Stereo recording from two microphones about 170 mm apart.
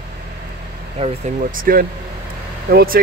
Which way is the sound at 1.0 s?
35° right (ahead or behind).